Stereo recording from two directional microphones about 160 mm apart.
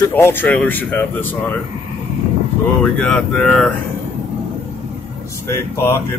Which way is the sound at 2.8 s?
5° left (ahead or behind).